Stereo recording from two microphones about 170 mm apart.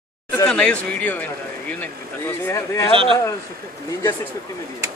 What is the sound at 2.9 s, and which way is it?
Speech, 30° right (ahead or behind).